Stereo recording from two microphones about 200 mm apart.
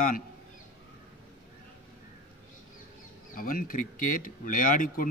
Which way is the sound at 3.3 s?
45° left (ahead or behind).